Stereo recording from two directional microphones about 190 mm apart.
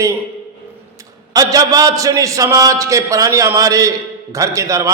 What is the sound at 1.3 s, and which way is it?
A man's voice, 20° right (ahead or behind).